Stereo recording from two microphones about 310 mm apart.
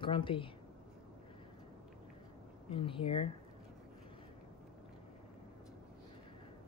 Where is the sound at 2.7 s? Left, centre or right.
Centre.